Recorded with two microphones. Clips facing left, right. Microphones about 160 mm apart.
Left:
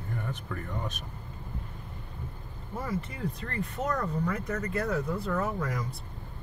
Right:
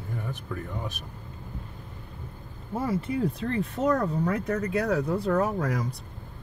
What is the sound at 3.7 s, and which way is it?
Speech, 70° right (ahead or behind).